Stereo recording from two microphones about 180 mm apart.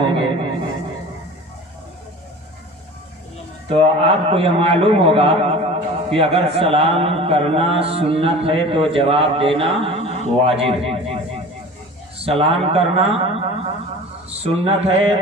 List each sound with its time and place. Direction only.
0.2 s a sound: 30° right (ahead or behind)
3.7 s a man's voice: 35° right (ahead or behind)
12.2 s a man's voice: 35° right (ahead or behind)